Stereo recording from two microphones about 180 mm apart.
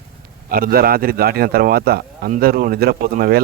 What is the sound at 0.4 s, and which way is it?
Speech, 55° right (ahead or behind).